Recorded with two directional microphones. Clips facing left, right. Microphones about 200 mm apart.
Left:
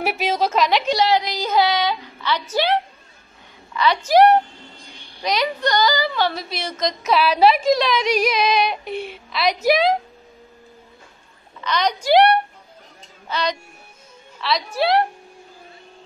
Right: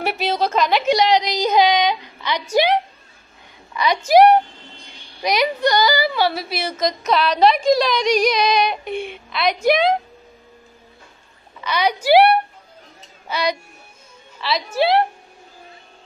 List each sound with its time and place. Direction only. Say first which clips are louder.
0.0 s a woman's voice: even; 5° left (ahead or behind)
0.9 s a woman's voice: right 2 dB; 15° right (ahead or behind); by 9.9 s 5° left (ahead or behind)
11.6 s a woman's voice: right 2 dB; 10° right (ahead or behind)